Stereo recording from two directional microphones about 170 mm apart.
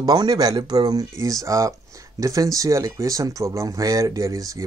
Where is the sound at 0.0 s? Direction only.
25° right (ahead or behind).